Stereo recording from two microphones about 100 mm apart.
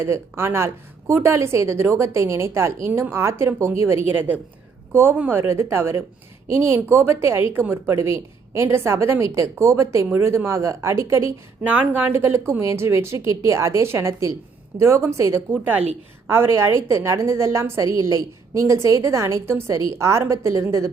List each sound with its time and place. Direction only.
0.0 s a woman's voice: 25° right (ahead or behind)
11.6 s speech: 15° right (ahead or behind)
12.1 s a woman's voice: 25° right (ahead or behind)